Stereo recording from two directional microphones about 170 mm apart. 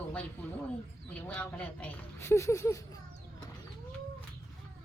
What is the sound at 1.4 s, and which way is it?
Speech, 10° left (ahead or behind).